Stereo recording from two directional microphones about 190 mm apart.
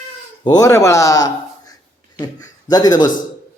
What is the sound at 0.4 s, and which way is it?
A man's voice, 20° left (ahead or behind).